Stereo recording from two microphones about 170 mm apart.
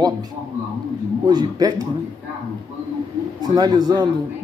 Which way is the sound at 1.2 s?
25° right (ahead or behind).